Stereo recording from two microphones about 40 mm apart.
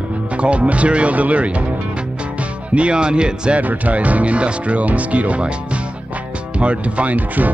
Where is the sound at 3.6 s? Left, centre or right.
Right.